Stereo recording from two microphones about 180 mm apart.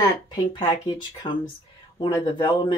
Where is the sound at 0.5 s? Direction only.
25° left (ahead or behind).